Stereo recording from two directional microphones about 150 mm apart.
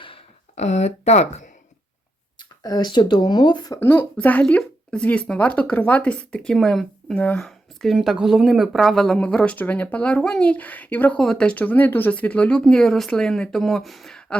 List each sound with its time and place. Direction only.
0.5 s speech: 50° left (ahead or behind)
2.4 s speech: 25° left (ahead or behind)
3.8 s speech: 15° left (ahead or behind)